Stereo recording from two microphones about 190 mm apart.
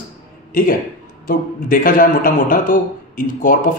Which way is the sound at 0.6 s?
45° left (ahead or behind).